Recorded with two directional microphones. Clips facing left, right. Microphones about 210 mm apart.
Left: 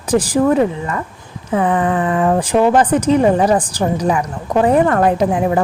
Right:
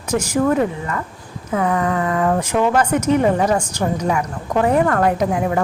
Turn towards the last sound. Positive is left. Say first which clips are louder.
# left 3 dB
turn(degrees=30)  # may be behind; listen again after turning